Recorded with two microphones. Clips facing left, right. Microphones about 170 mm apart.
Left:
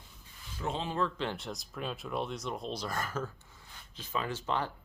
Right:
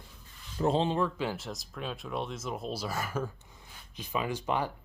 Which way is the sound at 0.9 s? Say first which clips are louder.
Right 2 dB; 10° right (ahead or behind).